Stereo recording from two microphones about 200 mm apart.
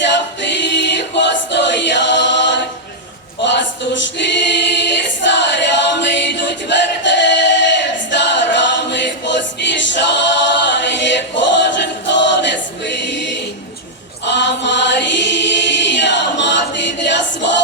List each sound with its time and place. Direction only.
0.0 s a capella: 60° left (ahead or behind)
3.4 s choir: 65° left (ahead or behind)
14.3 s chant: 60° left (ahead or behind)